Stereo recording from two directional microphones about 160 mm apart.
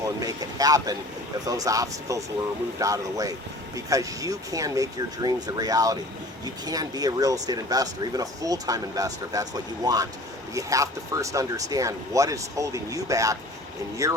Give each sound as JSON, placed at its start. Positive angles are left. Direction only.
{"t": 0.0, "sound": "speech", "side_deg": -25}